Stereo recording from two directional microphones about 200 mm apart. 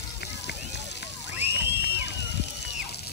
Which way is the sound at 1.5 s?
60° left (ahead or behind).